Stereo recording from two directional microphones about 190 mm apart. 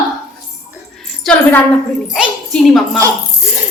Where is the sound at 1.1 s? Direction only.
5° left (ahead or behind).